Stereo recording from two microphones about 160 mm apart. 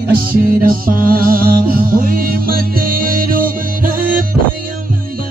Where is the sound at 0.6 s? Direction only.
60° right (ahead or behind).